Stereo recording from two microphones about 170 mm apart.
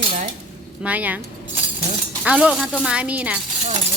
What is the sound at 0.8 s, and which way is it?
Speech, 10° right (ahead or behind).